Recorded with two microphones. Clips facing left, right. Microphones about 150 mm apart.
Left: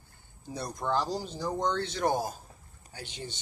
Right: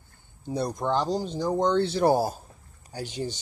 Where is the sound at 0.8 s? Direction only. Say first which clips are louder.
Right 3 dB; 25° right (ahead or behind).